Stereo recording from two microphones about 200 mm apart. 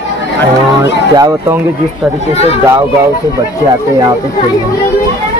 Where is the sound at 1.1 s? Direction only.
20° right (ahead or behind).